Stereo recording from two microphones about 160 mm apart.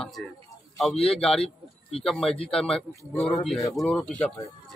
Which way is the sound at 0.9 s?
35° left (ahead or behind).